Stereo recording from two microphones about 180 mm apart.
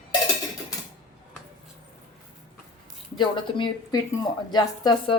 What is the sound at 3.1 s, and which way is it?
Speech, 25° left (ahead or behind).